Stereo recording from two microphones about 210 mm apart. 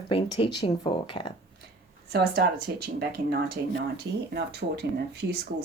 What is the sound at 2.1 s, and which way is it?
Speech, 50° right (ahead or behind).